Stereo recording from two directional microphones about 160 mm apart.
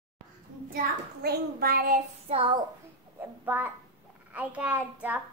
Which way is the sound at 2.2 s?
35° right (ahead or behind).